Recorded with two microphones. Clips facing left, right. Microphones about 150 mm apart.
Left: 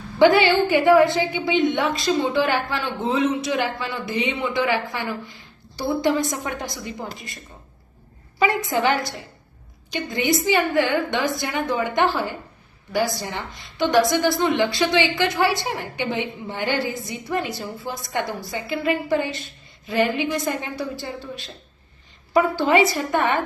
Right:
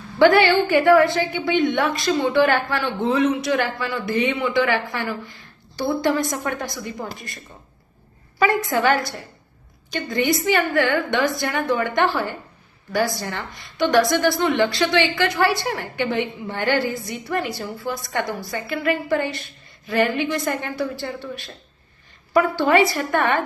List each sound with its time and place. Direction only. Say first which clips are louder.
0.2 s a woman's voice: right 1 dB; 20° left (ahead or behind)
8.4 s a woman's voice: right 1 dB; 20° left (ahead or behind)
9.9 s a woman's voice: right 1 dB; 20° left (ahead or behind)
22.6 s a woman's voice: right 1 dB; 20° left (ahead or behind)